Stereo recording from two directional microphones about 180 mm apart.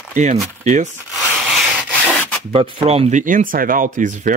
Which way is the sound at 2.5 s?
35° right (ahead or behind).